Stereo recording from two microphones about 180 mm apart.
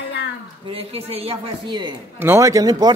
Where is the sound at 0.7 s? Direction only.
30° right (ahead or behind).